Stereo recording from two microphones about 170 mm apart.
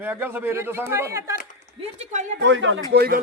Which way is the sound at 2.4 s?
90° right.